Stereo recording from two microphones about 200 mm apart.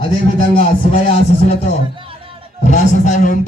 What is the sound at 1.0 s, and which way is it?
A man's voice, 30° left (ahead or behind).